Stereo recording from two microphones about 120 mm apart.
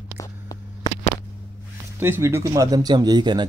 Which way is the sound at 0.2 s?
30° left (ahead or behind).